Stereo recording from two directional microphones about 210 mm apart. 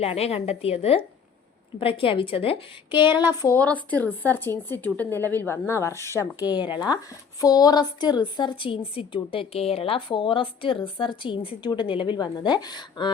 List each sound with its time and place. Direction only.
0.0 s a woman's voice: 30° left (ahead or behind)
3.4 s a woman's voice: 10° left (ahead or behind)